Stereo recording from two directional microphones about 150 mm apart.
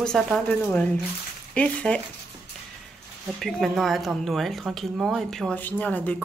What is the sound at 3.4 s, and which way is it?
Speech, centre (ahead or behind).